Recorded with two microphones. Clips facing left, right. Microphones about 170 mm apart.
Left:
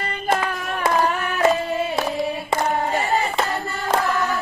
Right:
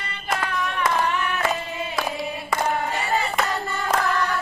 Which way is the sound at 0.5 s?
40° left (ahead or behind).